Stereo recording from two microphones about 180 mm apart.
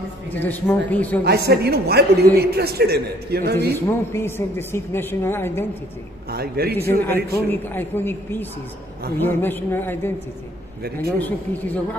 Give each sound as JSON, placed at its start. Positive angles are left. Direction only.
{"t": 0.3, "sound": "a woman's voice", "side_deg": 10}
{"t": 1.2, "sound": "a woman's voice", "side_deg": -65}
{"t": 3.7, "sound": "a woman's voice", "side_deg": 15}
{"t": 6.3, "sound": "a woman's voice", "side_deg": -60}
{"t": 6.8, "sound": "a woman's voice", "side_deg": 10}
{"t": 10.8, "sound": "a woman's voice", "side_deg": -60}
{"t": 11.1, "sound": "a woman's voice", "side_deg": 10}